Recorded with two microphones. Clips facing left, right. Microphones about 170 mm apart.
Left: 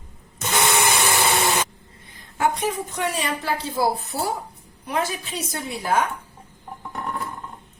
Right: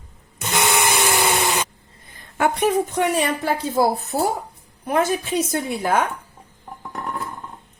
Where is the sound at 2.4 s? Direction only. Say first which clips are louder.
Right 4 dB; 60° right (ahead or behind).